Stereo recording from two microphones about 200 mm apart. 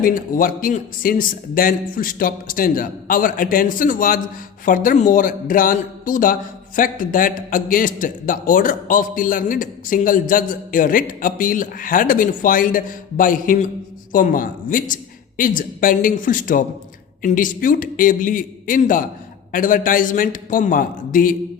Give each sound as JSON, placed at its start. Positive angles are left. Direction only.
{"t": 0.0, "sound": "a man's voice", "side_deg": 45}